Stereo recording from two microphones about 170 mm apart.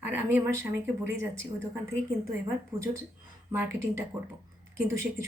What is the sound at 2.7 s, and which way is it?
A woman's voice, 15° right (ahead or behind).